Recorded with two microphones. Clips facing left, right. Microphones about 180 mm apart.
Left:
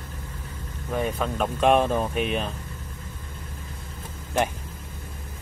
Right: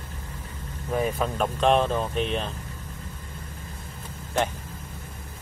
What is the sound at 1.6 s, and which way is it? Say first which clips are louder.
Speech: left 2 dB; 10° left (ahead or behind).